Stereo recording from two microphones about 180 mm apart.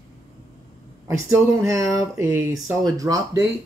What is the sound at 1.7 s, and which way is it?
Speech, 15° right (ahead or behind).